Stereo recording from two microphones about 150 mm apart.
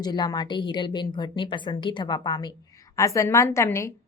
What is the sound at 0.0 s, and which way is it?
A woman's voice, 25° left (ahead or behind).